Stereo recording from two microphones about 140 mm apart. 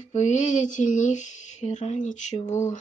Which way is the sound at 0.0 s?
55° left (ahead or behind).